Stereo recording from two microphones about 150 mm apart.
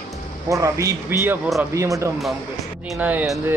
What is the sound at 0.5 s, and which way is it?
Speech, 20° right (ahead or behind).